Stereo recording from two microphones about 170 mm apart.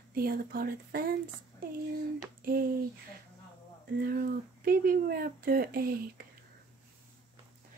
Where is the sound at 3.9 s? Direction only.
60° right (ahead or behind).